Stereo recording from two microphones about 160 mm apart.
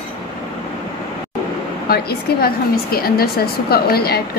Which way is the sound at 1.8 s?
75° left (ahead or behind).